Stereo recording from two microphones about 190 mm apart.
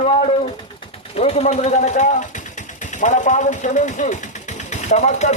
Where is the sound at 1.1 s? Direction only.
35° left (ahead or behind).